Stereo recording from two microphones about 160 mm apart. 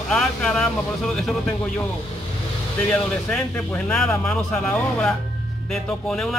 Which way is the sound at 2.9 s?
5° left (ahead or behind).